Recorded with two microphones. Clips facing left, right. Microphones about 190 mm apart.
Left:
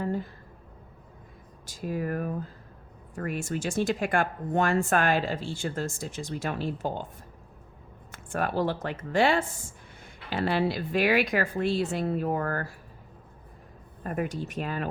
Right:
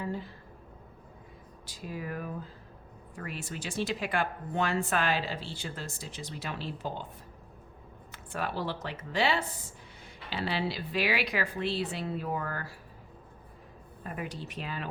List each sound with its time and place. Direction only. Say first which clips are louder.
0.0 s a sound: left 5 dB; 50° left (ahead or behind)
1.6 s speech: left 8 dB; 45° left (ahead or behind)
8.1 s speech: left 6 dB; 50° left (ahead or behind)
14.0 s speech: left 7 dB; 45° left (ahead or behind)